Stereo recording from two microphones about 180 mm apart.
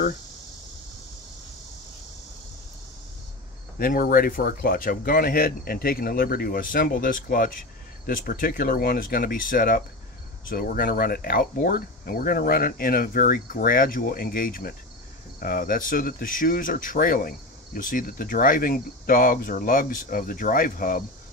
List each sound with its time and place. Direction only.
3.7 s speech: 55° left (ahead or behind)